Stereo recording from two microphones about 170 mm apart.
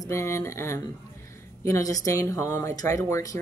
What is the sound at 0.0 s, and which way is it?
Speech, 15° left (ahead or behind).